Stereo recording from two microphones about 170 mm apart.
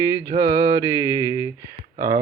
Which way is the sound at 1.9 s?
55° right (ahead or behind).